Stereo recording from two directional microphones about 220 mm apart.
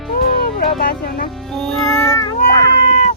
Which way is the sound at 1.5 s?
Centre (ahead or behind).